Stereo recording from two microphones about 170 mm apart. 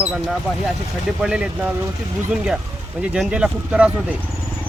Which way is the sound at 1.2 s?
5° right (ahead or behind).